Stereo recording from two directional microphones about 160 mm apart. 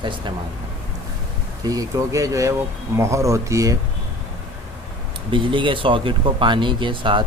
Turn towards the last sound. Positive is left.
turn(degrees=-30)  # may be behind; listen again after turning